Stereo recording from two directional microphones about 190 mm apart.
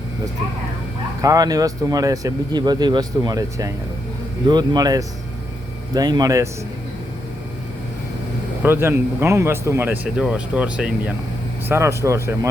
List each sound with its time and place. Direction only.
1.2 s speech: 20° right (ahead or behind)
8.6 s speech: 10° right (ahead or behind)